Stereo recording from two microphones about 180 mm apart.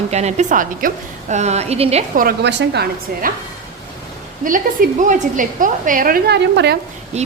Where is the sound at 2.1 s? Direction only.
60° right (ahead or behind).